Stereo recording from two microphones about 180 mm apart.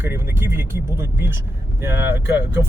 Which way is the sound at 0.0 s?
10° right (ahead or behind).